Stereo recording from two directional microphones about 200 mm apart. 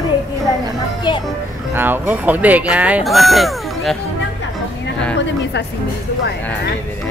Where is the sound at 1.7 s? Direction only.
10° right (ahead or behind).